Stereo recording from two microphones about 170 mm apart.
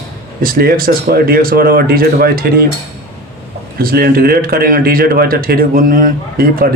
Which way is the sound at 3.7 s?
60° right (ahead or behind).